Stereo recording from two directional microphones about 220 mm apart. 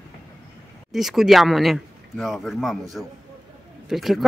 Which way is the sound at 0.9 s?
Centre (ahead or behind).